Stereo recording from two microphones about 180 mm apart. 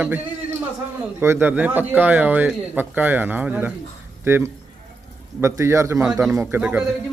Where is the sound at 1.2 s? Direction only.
10° right (ahead or behind).